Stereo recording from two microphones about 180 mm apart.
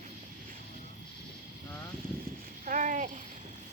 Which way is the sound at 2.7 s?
45° right (ahead or behind).